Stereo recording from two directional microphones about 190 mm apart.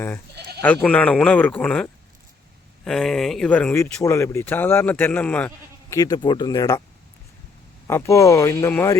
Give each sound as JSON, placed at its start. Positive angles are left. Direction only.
{"t": 0.6, "sound": "speech", "side_deg": 10}
{"t": 5.9, "sound": "speech", "side_deg": 20}
{"t": 7.9, "sound": "speech", "side_deg": 15}